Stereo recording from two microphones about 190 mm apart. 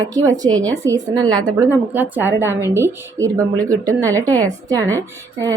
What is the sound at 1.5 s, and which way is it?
Speech, 10° right (ahead or behind).